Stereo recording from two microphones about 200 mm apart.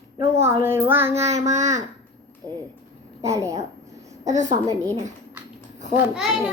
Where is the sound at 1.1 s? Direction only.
30° right (ahead or behind).